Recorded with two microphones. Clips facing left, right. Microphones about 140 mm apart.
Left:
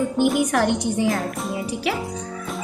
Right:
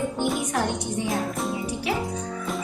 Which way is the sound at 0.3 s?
90° left.